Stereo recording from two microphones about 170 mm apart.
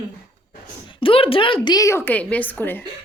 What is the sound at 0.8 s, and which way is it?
A woman's voice, 30° left (ahead or behind).